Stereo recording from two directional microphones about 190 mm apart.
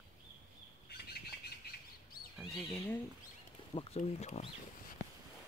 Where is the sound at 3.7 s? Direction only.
35° left (ahead or behind).